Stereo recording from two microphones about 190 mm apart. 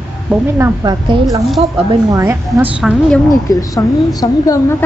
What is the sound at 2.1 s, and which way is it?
Speech, 15° right (ahead or behind).